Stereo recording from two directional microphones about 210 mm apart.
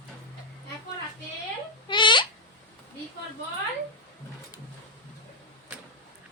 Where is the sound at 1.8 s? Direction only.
20° left (ahead or behind).